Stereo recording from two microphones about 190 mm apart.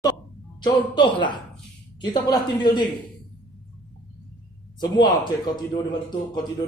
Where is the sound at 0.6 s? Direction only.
25° left (ahead or behind).